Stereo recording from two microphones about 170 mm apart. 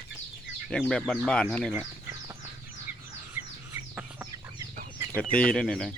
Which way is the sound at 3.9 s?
15° right (ahead or behind).